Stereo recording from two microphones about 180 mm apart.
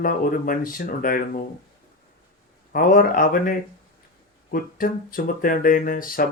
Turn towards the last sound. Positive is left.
turn(degrees=50)  # may be behind; listen again after turning